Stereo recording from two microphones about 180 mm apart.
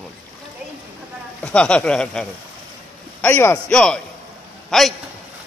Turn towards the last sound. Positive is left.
turn(degrees=0)  # may be behind; listen again after turning